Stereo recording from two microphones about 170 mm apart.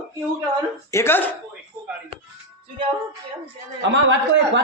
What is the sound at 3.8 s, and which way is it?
Speech, 90° right.